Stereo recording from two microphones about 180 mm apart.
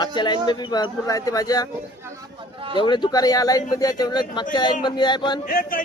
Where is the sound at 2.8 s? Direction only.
25° left (ahead or behind).